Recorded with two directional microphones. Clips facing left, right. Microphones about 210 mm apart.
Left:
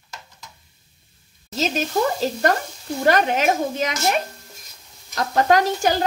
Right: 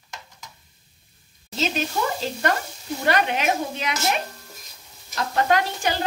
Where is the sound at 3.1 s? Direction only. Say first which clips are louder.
Left 4 dB; 45° left (ahead or behind).